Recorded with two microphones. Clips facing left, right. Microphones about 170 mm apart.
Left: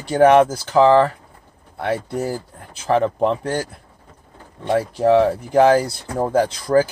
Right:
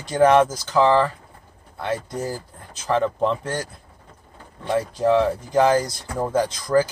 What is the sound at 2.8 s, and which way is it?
Speech, 35° left (ahead or behind).